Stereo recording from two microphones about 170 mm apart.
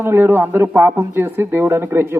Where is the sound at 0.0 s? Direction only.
15° right (ahead or behind).